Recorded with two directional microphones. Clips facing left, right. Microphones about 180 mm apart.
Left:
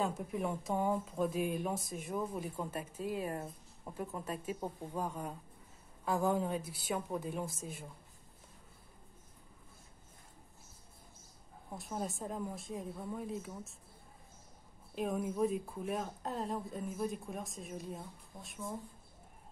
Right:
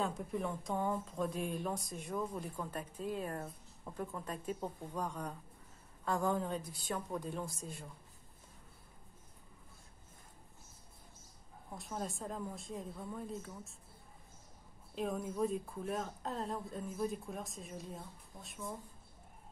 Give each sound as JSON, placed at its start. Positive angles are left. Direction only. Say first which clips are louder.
{"t": 0.0, "sound": "a woman's voice", "louder": "left 2 dB", "side_deg": 5}
{"t": 11.7, "sound": "speech", "louder": "left 2 dB", "side_deg": 5}
{"t": 15.0, "sound": "speech", "louder": "left 2 dB", "side_deg": 0}